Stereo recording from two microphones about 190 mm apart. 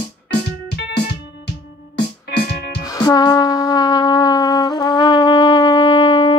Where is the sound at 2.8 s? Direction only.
20° left (ahead or behind).